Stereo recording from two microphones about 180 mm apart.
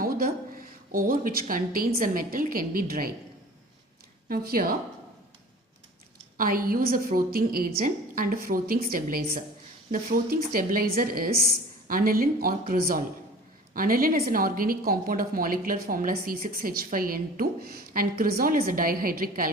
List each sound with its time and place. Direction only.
0.0 s a sound: 55° right (ahead or behind)
2.0 s a woman's voice: 50° right (ahead or behind)
4.3 s a woman's voice: 55° right (ahead or behind)
6.3 s a woman's voice: 50° right (ahead or behind)